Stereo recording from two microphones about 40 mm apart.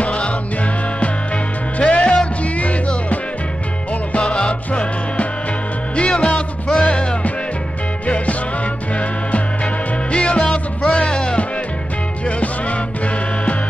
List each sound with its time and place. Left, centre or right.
0.0 s music: left
1.8 s music: left
10.1 s music: left